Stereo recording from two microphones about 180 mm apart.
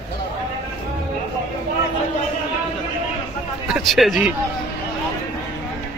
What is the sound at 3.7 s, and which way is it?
Speech, centre (ahead or behind).